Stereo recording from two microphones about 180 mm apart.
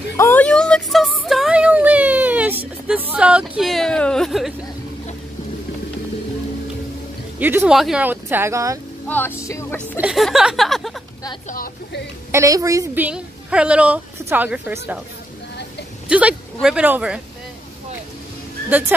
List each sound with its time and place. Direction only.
0.2 s child singing: 10° left (ahead or behind); by 2.6 s 10° right (ahead or behind)
2.9 s a sound: 10° right (ahead or behind)
7.3 s a woman's voice: 10° right (ahead or behind)
9.0 s vehicle: 10° left (ahead or behind)
9.9 s speech: 5° right (ahead or behind)
11.4 s speech: 50° left (ahead or behind)
12.3 s a woman's voice: 15° right (ahead or behind)
16.1 s a woman's voice: 5° right (ahead or behind)
18.7 s a woman's voice: 10° right (ahead or behind)